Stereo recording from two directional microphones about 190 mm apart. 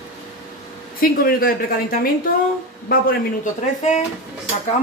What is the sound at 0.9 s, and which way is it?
A woman's voice, 50° left (ahead or behind).